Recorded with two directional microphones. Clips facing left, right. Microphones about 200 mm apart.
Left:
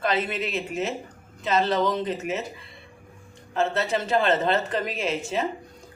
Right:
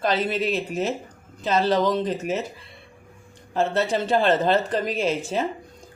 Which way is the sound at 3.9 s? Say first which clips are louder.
Right 2 dB; 35° right (ahead or behind).